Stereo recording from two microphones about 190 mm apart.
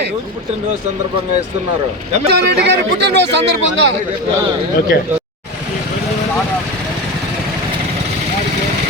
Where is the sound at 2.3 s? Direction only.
60° right (ahead or behind).